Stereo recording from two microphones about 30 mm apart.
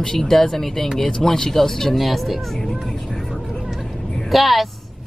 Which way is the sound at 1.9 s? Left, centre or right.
Centre.